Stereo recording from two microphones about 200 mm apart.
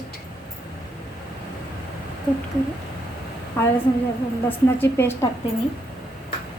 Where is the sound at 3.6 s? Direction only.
10° left (ahead or behind).